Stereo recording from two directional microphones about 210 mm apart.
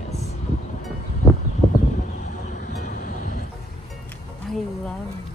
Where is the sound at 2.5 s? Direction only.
35° left (ahead or behind).